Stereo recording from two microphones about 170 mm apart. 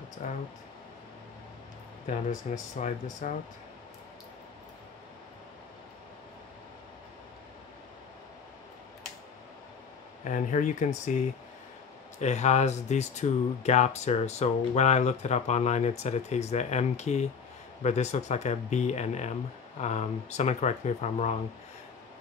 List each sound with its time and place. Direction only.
0.2 s speech: 45° left (ahead or behind)
2.0 s speech: 45° left (ahead or behind)
10.2 s speech: 45° left (ahead or behind)
12.2 s speech: 45° left (ahead or behind)